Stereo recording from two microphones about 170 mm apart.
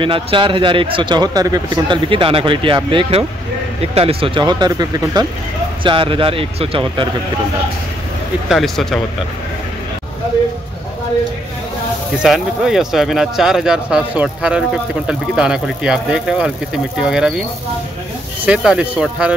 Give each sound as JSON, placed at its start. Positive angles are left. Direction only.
{"t": 0.0, "sound": "speech", "side_deg": -30}
{"t": 8.5, "sound": "speech", "side_deg": 0}
{"t": 12.2, "sound": "speech", "side_deg": 0}
{"t": 18.4, "sound": "speech", "side_deg": -5}